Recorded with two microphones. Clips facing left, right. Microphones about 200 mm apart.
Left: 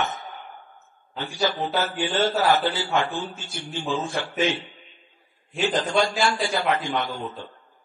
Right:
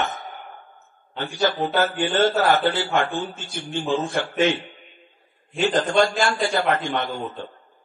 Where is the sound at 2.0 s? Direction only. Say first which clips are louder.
Right 2 dB; 50° right (ahead or behind).